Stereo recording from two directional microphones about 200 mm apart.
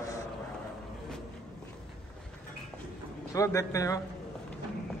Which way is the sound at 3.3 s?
15° left (ahead or behind).